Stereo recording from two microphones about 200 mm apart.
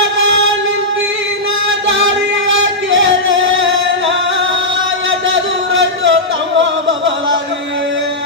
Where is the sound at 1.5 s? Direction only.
75° right (ahead or behind).